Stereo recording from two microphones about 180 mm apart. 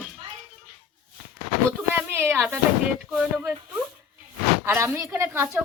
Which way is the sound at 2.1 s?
10° right (ahead or behind).